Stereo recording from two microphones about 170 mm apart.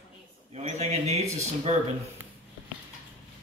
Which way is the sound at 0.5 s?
40° right (ahead or behind).